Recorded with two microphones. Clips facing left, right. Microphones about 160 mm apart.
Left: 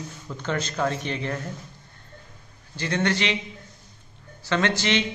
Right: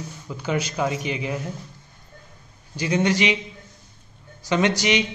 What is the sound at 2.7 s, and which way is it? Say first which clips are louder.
Speech: right 4 dB; 15° right (ahead or behind).